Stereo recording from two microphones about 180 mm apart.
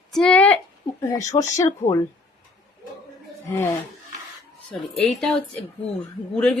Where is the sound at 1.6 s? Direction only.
15° left (ahead or behind).